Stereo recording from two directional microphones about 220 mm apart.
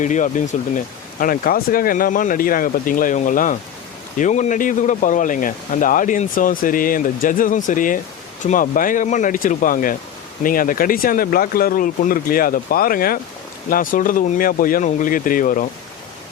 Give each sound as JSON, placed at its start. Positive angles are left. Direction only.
{"t": 0.0, "sound": "speech", "side_deg": 35}